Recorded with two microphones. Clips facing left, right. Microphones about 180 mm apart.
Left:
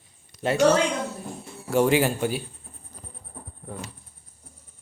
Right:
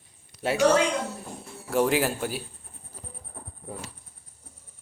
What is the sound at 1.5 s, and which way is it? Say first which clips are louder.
Speech: left 3 dB; centre (ahead or behind).